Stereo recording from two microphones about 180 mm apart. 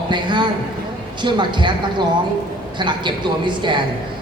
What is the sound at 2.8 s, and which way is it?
A man's voice, 25° right (ahead or behind).